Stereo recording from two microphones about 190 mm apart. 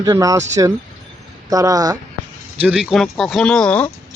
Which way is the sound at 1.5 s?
20° right (ahead or behind).